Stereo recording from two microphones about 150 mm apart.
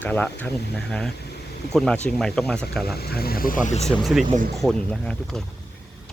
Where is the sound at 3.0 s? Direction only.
90° left; by 3.8 s 55° left (ahead or behind).